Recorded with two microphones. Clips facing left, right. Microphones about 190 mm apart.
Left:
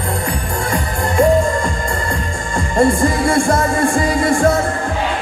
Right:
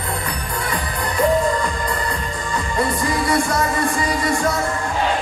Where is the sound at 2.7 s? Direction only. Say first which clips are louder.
Left 8 dB; 50° left (ahead or behind).